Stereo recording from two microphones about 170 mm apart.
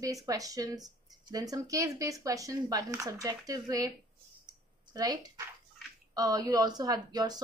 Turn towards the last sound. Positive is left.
turn(degrees=-25)  # may be behind; listen again after turning